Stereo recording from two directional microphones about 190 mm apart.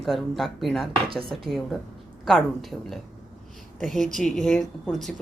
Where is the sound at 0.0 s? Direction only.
Centre (ahead or behind).